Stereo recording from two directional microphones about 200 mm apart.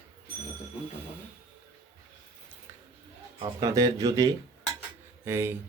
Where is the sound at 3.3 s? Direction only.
20° right (ahead or behind).